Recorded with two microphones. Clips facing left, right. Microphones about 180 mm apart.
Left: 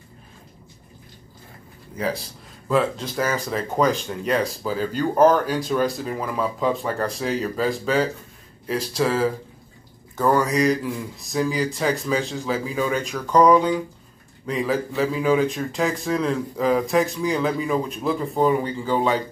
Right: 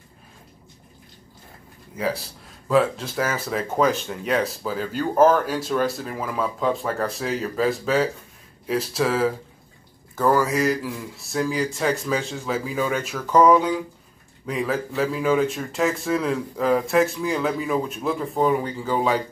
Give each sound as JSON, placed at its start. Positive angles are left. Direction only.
{"t": 2.0, "sound": "speech", "side_deg": -5}